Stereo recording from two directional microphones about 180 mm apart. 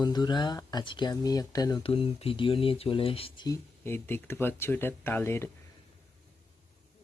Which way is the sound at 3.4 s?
15° left (ahead or behind).